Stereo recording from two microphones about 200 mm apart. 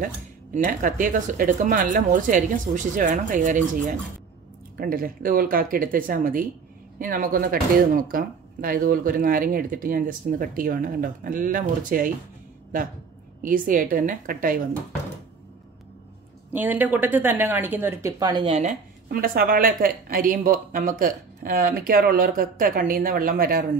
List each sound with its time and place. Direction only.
0.7 s speech: 45° right (ahead or behind)
16.5 s speech: 10° right (ahead or behind); by 23.6 s 45° right (ahead or behind)